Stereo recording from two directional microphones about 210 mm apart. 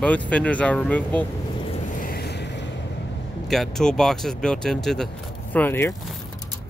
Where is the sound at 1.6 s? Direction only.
30° left (ahead or behind).